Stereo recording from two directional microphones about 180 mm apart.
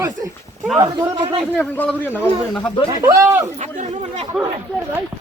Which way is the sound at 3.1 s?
15° right (ahead or behind).